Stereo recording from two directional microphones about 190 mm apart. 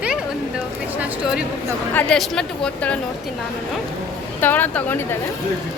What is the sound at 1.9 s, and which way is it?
Speech, 5° left (ahead or behind).